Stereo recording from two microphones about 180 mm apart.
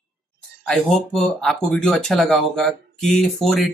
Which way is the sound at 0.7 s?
Centre (ahead or behind).